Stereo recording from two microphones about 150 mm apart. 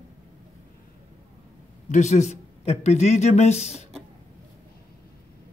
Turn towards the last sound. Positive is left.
turn(degrees=50)  # may be behind; listen again after turning